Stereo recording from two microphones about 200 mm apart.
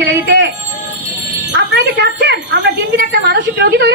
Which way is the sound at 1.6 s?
55° right (ahead or behind).